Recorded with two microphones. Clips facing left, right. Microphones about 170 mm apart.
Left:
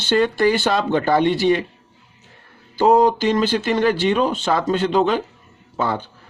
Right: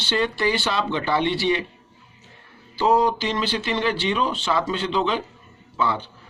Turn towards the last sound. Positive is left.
turn(degrees=45)  # may be behind; listen again after turning